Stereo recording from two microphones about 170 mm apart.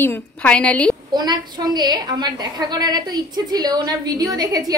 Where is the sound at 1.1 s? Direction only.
25° right (ahead or behind).